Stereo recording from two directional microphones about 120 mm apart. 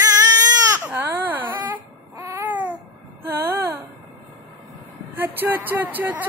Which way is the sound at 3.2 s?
20° right (ahead or behind).